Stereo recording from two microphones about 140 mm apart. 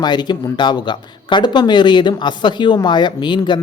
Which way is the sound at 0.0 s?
30° left (ahead or behind).